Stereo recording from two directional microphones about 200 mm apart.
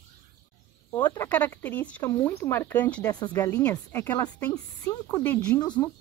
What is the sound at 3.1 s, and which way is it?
Speech, 20° left (ahead or behind).